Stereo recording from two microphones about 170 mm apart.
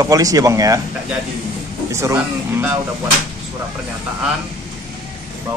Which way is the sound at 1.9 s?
15° right (ahead or behind).